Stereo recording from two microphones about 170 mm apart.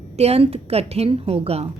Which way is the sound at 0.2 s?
35° right (ahead or behind).